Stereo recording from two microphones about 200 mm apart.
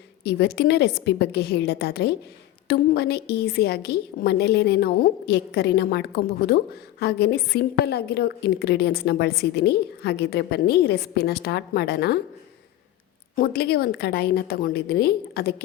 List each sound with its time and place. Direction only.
0.3 s a woman's voice: 55° left (ahead or behind)
13.3 s a woman's voice: 50° left (ahead or behind)